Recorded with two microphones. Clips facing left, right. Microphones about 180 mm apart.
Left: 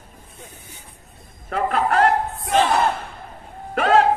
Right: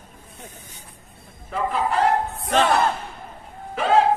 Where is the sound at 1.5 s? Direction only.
70° left (ahead or behind).